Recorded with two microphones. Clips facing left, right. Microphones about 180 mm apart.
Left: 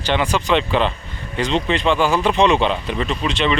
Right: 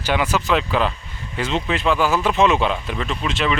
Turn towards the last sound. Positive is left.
turn(degrees=0)  # may be behind; listen again after turning